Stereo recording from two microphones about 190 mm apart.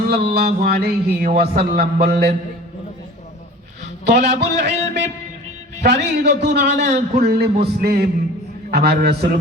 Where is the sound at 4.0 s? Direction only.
60° right (ahead or behind).